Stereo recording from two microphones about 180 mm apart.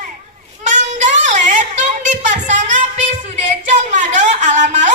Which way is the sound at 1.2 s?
40° right (ahead or behind).